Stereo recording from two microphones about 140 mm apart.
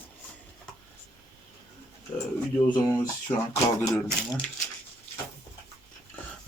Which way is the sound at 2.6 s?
30° left (ahead or behind).